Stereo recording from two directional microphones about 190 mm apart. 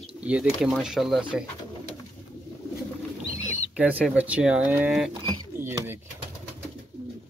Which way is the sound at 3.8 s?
5° right (ahead or behind).